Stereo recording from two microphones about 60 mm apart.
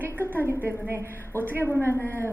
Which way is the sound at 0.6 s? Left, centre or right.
Right.